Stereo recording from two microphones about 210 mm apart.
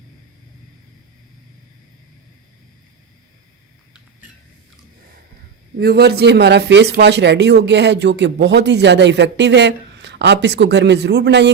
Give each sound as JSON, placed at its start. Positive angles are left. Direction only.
{"t": 5.8, "sound": "speech", "side_deg": -50}